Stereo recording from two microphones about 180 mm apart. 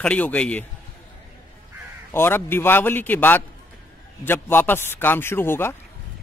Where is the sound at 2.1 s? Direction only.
10° left (ahead or behind).